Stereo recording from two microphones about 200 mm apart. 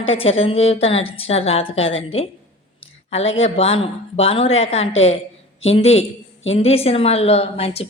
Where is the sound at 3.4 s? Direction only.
30° left (ahead or behind).